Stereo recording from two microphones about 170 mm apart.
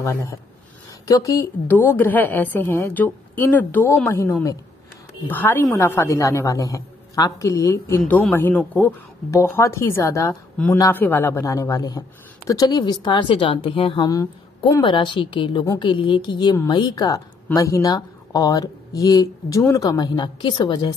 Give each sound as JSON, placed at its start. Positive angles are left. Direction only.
{"t": 0.0, "sound": "a woman's voice", "side_deg": 20}